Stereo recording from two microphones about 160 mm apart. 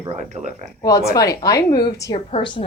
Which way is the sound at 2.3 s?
35° left (ahead or behind).